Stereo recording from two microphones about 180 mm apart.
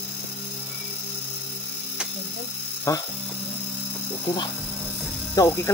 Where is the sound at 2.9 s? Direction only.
15° left (ahead or behind).